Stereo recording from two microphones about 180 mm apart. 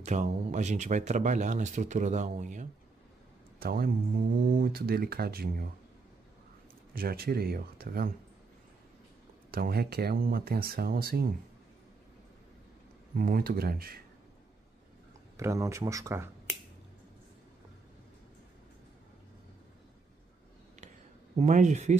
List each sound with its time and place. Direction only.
0.0 s speech: 40° right (ahead or behind)
3.5 s speech: 55° right (ahead or behind)
7.0 s speech: 55° right (ahead or behind)
9.5 s speech: 60° right (ahead or behind)
13.1 s speech: 55° right (ahead or behind)
15.3 s speech: 20° right (ahead or behind)
21.4 s speech: 40° right (ahead or behind)